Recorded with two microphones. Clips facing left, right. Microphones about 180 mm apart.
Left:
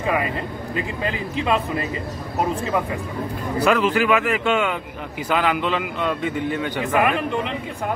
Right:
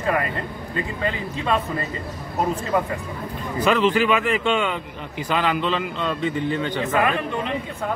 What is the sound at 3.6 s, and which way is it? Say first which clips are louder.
A man's voice: even; 10° left (ahead or behind).